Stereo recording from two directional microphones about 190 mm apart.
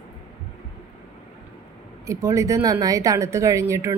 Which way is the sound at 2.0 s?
15° right (ahead or behind).